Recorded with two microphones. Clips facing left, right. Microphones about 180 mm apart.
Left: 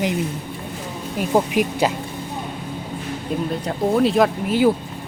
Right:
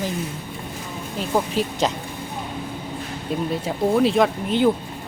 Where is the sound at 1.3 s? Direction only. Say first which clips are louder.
Left 4 dB; 15° left (ahead or behind).